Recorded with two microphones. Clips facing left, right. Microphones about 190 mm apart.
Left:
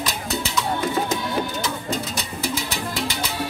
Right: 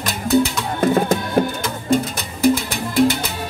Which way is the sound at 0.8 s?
55° right (ahead or behind).